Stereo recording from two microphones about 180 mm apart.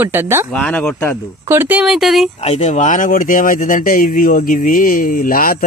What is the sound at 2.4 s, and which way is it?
Speech, 40° left (ahead or behind).